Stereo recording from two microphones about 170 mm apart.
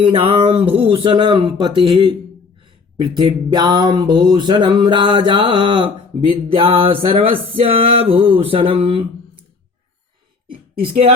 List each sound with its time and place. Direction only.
0.1 s speech: 30° right (ahead or behind)
3.2 s music: 25° right (ahead or behind)
7.6 s speech: 35° right (ahead or behind)
10.8 s speech: 35° right (ahead or behind)